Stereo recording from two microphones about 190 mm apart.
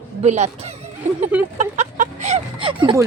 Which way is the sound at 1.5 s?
35° right (ahead or behind).